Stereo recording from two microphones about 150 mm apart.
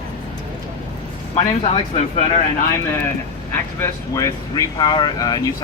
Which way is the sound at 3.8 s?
20° left (ahead or behind).